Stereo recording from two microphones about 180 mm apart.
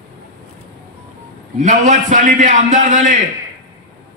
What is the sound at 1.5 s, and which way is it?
A man's voice, 45° right (ahead or behind).